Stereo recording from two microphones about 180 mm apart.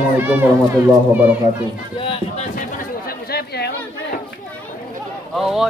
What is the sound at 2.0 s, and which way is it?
Run, 30° left (ahead or behind).